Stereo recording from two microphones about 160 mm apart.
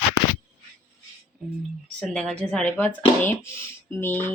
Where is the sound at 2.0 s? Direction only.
5° left (ahead or behind).